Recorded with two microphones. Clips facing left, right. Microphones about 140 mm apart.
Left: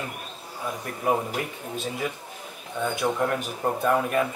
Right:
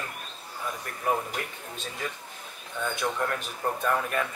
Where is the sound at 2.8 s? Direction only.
25° left (ahead or behind).